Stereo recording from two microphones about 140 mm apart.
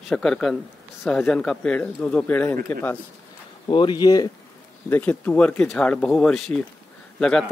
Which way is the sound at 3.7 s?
35° left (ahead or behind).